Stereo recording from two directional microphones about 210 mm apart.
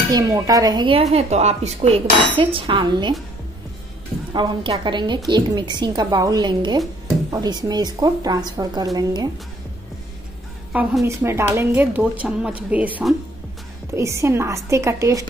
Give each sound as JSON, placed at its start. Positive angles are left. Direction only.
{"t": 0.1, "sound": "a woman's voice", "side_deg": -15}
{"t": 4.3, "sound": "a woman's voice", "side_deg": -20}
{"t": 10.7, "sound": "a woman's voice", "side_deg": -5}